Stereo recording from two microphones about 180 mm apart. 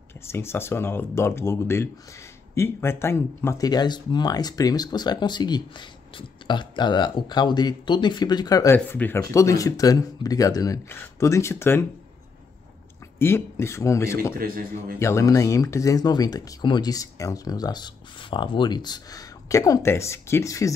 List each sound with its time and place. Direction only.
0.3 s speech: 15° left (ahead or behind)
8.7 s speech: 10° left (ahead or behind)
13.2 s speech: 15° left (ahead or behind)
14.4 s a man's voice: 50° right (ahead or behind)
15.0 s speech: 15° left (ahead or behind)